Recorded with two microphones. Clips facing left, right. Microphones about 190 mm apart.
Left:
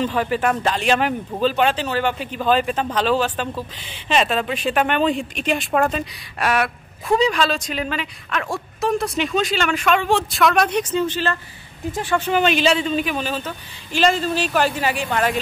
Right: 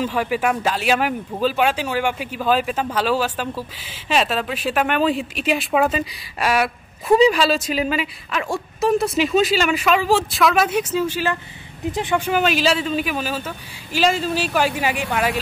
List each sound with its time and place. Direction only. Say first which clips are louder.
0.0 s speech: left 1 dB; 10° right (ahead or behind)
12.3 s speech: left 2 dB; 5° right (ahead or behind)